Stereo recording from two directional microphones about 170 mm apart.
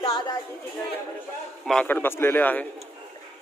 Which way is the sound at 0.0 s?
25° left (ahead or behind).